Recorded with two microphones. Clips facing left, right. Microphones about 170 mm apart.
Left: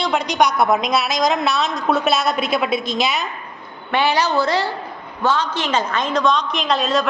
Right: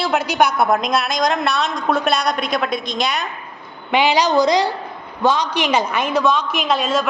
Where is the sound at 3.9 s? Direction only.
15° right (ahead or behind).